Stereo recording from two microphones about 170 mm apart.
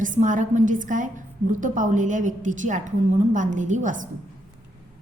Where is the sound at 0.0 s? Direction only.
50° right (ahead or behind).